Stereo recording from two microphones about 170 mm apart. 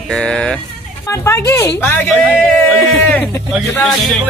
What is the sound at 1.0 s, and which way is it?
Speech, 15° left (ahead or behind).